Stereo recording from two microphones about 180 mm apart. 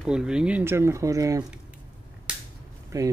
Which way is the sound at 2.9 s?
20° right (ahead or behind).